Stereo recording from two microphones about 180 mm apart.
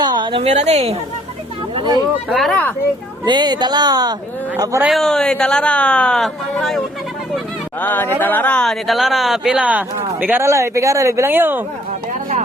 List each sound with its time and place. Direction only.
0.0 s a woman's voice: 25° right (ahead or behind)
2.3 s speech: 5° left (ahead or behind)
3.2 s speech: 25° right (ahead or behind)
4.8 s speech: centre (ahead or behind)